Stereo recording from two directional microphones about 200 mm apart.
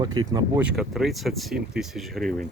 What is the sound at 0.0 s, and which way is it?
Speech, 20° right (ahead or behind).